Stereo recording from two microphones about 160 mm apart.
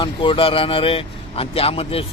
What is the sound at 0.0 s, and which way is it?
A man's voice, 30° left (ahead or behind).